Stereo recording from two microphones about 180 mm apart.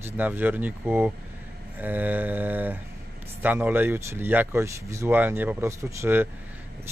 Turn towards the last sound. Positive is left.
turn(degrees=-15)  # may be behind; listen again after turning